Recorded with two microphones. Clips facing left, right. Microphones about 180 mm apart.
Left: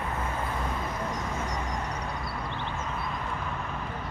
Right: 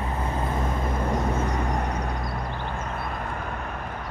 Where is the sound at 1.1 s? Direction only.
60° right (ahead or behind).